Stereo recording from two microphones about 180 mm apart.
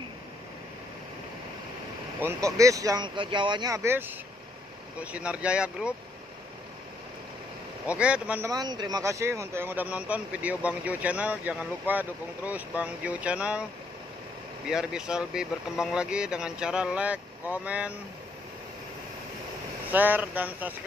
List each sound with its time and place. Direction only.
2.2 s speech: 15° right (ahead or behind)
7.8 s speech: 5° right (ahead or behind)
8.5 s speech: 20° right (ahead or behind); by 13.7 s 5° right (ahead or behind)
14.7 s speech: 5° right (ahead or behind)
19.9 s speech: 10° right (ahead or behind)